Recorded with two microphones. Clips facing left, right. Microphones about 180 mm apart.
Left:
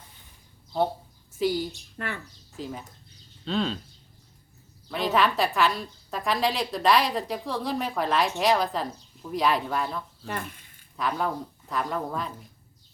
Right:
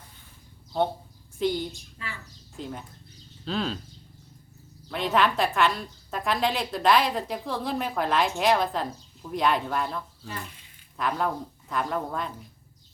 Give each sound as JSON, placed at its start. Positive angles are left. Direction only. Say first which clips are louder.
{"t": 1.4, "sound": "a woman's voice", "louder": "left 1 dB", "side_deg": 5}
{"t": 2.0, "sound": "speech", "louder": "left 7 dB", "side_deg": 60}
{"t": 2.6, "sound": "a woman's voice", "louder": "left 1 dB", "side_deg": 0}
{"t": 4.9, "sound": "a woman's voice", "louder": "even", "side_deg": 0}
{"t": 10.2, "sound": "speech", "louder": "left 4 dB", "side_deg": 55}
{"t": 10.9, "sound": "a woman's voice", "louder": "even", "side_deg": 0}